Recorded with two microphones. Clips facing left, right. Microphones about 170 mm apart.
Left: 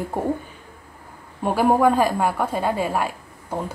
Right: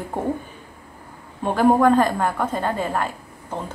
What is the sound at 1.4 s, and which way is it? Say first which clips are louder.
A woman's voice: right 1 dB; 10° left (ahead or behind).